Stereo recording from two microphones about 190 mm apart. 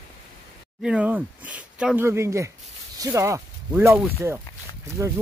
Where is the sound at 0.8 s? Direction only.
5° right (ahead or behind).